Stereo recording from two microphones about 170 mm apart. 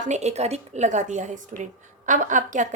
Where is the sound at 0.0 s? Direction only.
40° right (ahead or behind).